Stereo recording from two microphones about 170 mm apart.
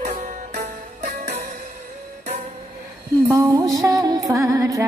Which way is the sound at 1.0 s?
40° right (ahead or behind).